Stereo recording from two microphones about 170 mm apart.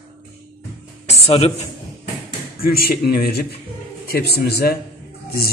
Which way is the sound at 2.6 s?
60° left (ahead or behind).